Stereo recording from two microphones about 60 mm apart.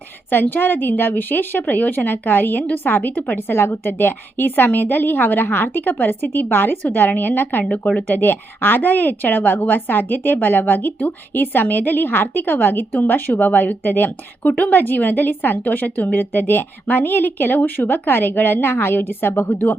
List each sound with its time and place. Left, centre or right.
0.3 s speech: left